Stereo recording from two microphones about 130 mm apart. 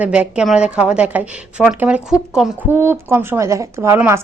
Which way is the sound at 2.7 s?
20° right (ahead or behind).